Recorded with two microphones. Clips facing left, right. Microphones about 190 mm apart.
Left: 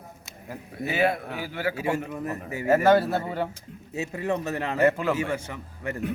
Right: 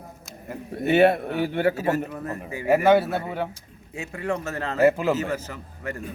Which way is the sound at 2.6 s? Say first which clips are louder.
Right 1 dB; 10° right (ahead or behind).